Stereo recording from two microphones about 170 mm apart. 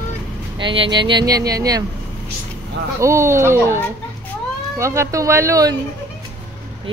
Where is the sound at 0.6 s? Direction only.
30° right (ahead or behind).